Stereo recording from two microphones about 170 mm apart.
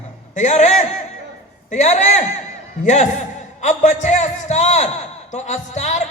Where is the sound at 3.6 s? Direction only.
45° left (ahead or behind).